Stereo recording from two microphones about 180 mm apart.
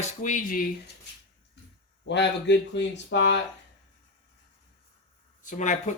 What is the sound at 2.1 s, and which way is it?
Speech, 75° left (ahead or behind).